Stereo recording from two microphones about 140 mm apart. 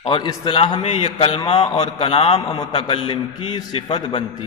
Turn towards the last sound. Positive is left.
turn(degrees=35)  # may be behind; listen again after turning